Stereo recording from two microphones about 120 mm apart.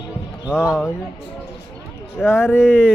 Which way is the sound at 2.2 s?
5° left (ahead or behind).